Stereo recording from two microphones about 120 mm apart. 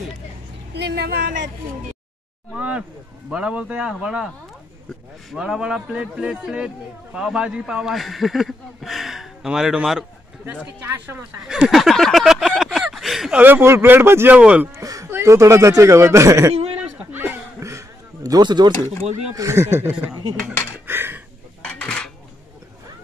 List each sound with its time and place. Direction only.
2.5 s a sound: 10° right (ahead or behind)
3.3 s a man's voice: 10° right (ahead or behind)
5.3 s a man's voice: 5° right (ahead or behind)
11.4 s a sound: 5° right (ahead or behind)
13.4 s a man's voice: 15° right (ahead or behind)
14.8 s a man's voice: 30° right (ahead or behind)
16.7 s a sound: 15° right (ahead or behind); by 18.7 s 35° right (ahead or behind)
19.3 s a man's voice: 25° right (ahead or behind)
20.8 s dishes: 20° right (ahead or behind)
21.6 s dishes: 10° left (ahead or behind)